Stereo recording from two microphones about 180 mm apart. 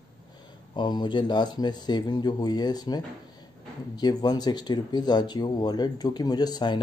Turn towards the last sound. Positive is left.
turn(degrees=25)  # may be behind; listen again after turning